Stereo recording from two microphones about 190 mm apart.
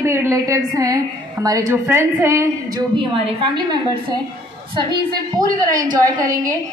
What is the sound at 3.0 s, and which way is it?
A woman's voice, 25° right (ahead or behind).